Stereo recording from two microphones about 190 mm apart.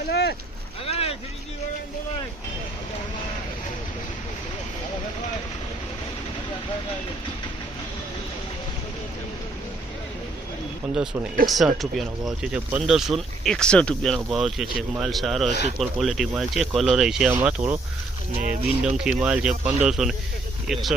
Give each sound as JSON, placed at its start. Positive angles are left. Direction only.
{"t": 0.1, "sound": "speech", "side_deg": 60}
{"t": 0.9, "sound": "vehicle", "side_deg": 30}
{"t": 10.9, "sound": "speech", "side_deg": -5}